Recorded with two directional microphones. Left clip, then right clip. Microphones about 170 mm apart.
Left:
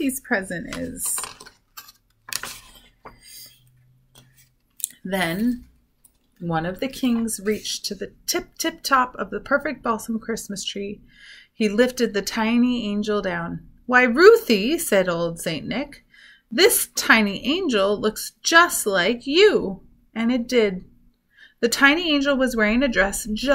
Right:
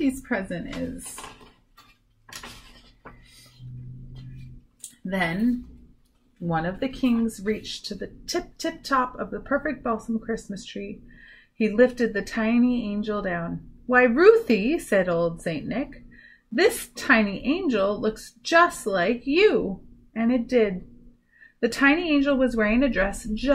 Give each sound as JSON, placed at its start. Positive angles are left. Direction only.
{"t": 0.0, "sound": "speech", "side_deg": 30}
{"t": 6.4, "sound": "speech", "side_deg": 25}